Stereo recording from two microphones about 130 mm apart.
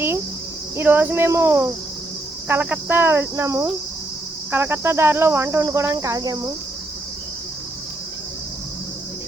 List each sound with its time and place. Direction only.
0.8 s cricket: 15° right (ahead or behind)
4.5 s speech: 20° right (ahead or behind)